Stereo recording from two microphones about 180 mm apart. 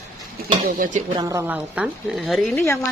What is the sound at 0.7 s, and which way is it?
Speech, 45° right (ahead or behind).